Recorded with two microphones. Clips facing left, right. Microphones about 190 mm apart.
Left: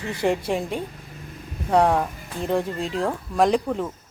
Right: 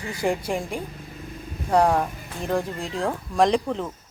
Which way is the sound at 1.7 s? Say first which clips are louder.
Left 1 dB; centre (ahead or behind).